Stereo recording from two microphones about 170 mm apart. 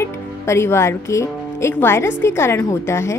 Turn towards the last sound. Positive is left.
turn(degrees=15)  # may be behind; listen again after turning